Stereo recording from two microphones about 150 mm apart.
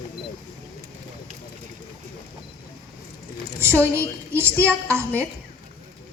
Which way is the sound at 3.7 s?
10° left (ahead or behind).